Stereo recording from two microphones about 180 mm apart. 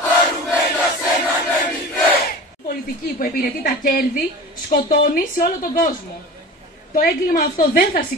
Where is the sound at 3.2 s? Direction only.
55° left (ahead or behind).